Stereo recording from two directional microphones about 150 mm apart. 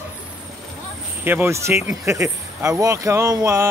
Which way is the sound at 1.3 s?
15° right (ahead or behind).